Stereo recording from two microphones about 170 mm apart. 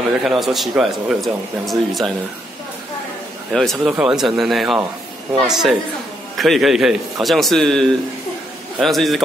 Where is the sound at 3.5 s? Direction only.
Centre (ahead or behind).